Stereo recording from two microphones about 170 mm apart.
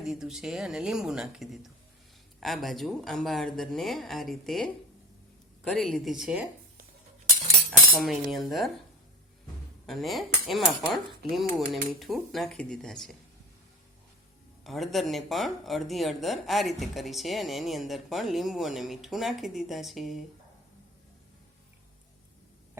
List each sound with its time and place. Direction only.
0.0 s speech: centre (ahead or behind)
7.7 s speech: centre (ahead or behind)
9.8 s speech: centre (ahead or behind)
14.6 s speech: centre (ahead or behind)